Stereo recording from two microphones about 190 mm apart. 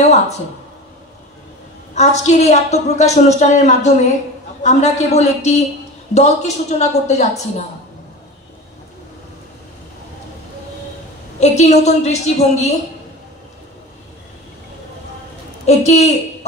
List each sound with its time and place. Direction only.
0.0 s a sound: 35° left (ahead or behind)
2.0 s a woman's voice: 35° left (ahead or behind)
11.3 s a woman's voice: 35° left (ahead or behind)
15.6 s a woman's voice: 35° left (ahead or behind)